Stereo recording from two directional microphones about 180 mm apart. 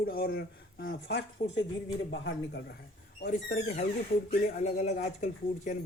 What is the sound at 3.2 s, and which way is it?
Speech, 45° left (ahead or behind).